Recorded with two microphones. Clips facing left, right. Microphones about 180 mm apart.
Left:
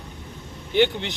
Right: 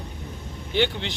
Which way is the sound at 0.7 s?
15° left (ahead or behind).